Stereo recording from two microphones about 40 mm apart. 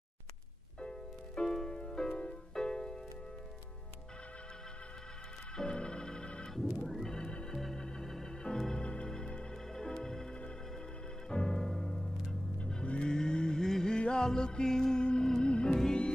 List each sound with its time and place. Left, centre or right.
0.7 s music: left
5.6 s organ: left
6.9 s organ: centre
7.2 s organ: left
7.5 s organ: centre
8.8 s organ: left
11.2 s music: centre
12.8 s car: left
13.1 s a sound: centre
13.9 s music: centre